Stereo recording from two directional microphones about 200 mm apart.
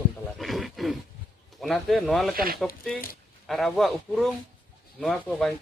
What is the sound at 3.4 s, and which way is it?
Speech, centre (ahead or behind).